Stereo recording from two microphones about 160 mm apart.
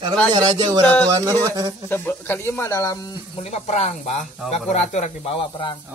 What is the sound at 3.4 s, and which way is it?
Speech, 45° left (ahead or behind).